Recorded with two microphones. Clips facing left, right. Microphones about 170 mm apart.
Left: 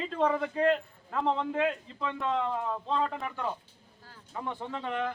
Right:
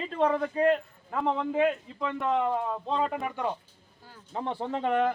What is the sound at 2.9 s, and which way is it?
Speech, 15° right (ahead or behind).